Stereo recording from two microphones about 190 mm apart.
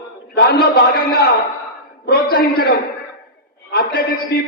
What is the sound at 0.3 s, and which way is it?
Speech, 55° left (ahead or behind).